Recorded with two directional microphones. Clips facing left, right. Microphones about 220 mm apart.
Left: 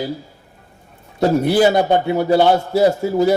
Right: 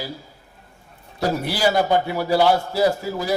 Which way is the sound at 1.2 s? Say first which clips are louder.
Left 8 dB; 55° left (ahead or behind).